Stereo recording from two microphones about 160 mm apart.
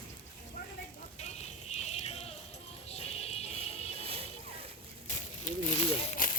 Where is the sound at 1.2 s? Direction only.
45° left (ahead or behind).